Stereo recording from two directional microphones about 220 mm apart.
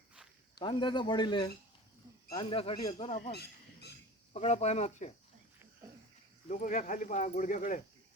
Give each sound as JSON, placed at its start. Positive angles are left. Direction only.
{"t": 0.6, "sound": "speech", "side_deg": 20}
{"t": 3.2, "sound": "a sound", "side_deg": 45}
{"t": 4.4, "sound": "speech", "side_deg": 30}
{"t": 6.5, "sound": "speech", "side_deg": 35}